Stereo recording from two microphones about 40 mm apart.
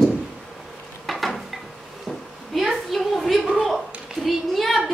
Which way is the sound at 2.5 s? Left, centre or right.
Centre.